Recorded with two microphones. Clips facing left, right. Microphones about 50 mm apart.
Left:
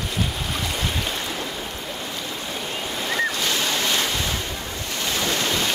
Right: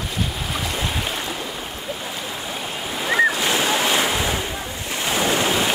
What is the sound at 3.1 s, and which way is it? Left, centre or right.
Waves, centre.